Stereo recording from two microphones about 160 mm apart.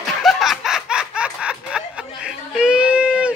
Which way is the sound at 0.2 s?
Centre (ahead or behind).